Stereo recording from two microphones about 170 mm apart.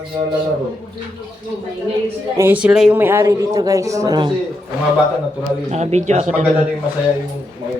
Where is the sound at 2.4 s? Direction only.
10° right (ahead or behind).